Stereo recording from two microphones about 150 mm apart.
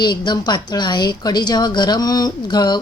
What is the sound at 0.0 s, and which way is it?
A woman's voice, 30° left (ahead or behind).